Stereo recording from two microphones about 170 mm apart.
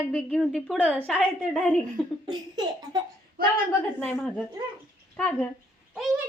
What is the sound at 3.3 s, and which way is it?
Speech, 60° right (ahead or behind).